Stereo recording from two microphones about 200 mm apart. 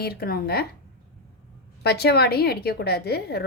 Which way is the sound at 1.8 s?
55° left (ahead or behind).